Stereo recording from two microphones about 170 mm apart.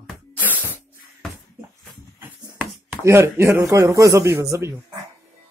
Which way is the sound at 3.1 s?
15° right (ahead or behind).